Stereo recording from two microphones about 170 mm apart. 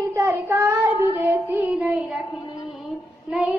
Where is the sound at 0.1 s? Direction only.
20° right (ahead or behind).